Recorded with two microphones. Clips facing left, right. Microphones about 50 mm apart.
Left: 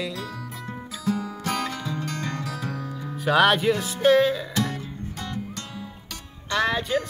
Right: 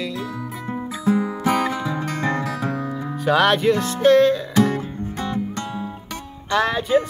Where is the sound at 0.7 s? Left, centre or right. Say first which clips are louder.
Right 7 dB; right.